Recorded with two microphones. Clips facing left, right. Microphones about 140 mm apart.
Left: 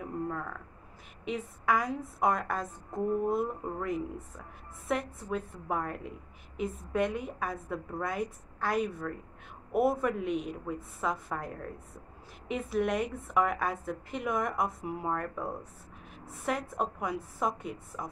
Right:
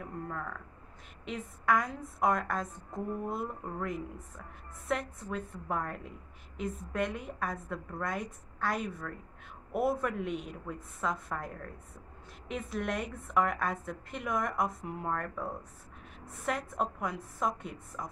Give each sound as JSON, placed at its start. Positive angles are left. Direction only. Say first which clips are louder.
{"t": 0.0, "sound": "a woman's voice", "louder": "left 4 dB", "side_deg": 5}